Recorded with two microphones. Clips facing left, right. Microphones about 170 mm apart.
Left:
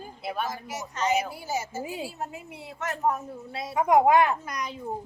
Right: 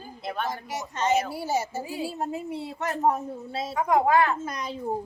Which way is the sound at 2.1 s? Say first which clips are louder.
Right 7 dB; 35° right (ahead or behind).